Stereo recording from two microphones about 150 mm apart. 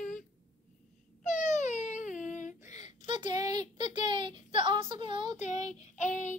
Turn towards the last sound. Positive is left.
turn(degrees=55)  # may be behind; listen again after turning